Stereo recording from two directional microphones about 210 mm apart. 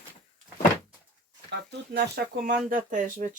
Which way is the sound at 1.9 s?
50° right (ahead or behind).